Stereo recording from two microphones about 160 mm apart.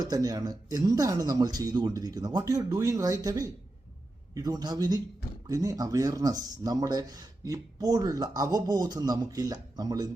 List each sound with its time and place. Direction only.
0.0 s speech: 25° right (ahead or behind)